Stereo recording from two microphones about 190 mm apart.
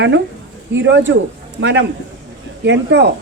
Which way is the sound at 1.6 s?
70° right (ahead or behind).